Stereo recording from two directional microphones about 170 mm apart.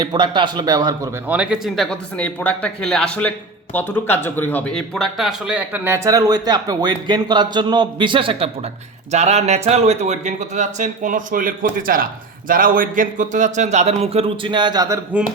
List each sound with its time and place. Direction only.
0.0 s speech: 25° right (ahead or behind)
1.3 s speech: 5° right (ahead or behind); by 8.4 s 30° right (ahead or behind)
9.1 s speech: 40° right (ahead or behind); by 14.9 s 25° right (ahead or behind)